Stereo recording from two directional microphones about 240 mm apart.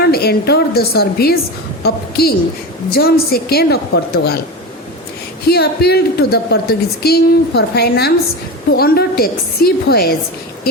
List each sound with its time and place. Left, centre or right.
0.0 s a woman's voice: left
5.5 s a woman's voice: left